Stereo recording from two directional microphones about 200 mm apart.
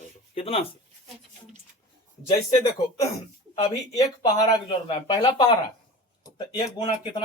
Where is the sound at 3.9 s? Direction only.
20° left (ahead or behind).